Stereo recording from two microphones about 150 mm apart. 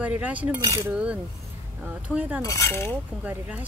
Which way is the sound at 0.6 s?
20° right (ahead or behind).